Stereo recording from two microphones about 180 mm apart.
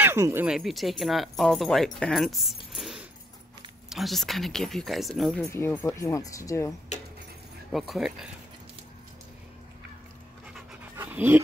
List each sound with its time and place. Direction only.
0.0 s speech: 15° right (ahead or behind); by 5.5 s centre (ahead or behind)
5.5 s speech: 15° left (ahead or behind)
6.9 s speech: 40° left (ahead or behind)
7.7 s speech: centre (ahead or behind)
10.5 s pant: 10° right (ahead or behind)